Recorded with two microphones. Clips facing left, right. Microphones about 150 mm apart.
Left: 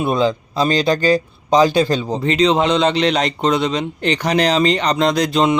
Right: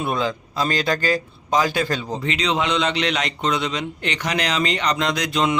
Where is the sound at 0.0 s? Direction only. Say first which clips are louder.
Left 6 dB; 25° left (ahead or behind).